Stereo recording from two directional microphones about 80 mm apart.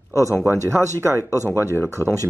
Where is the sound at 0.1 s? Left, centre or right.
Right.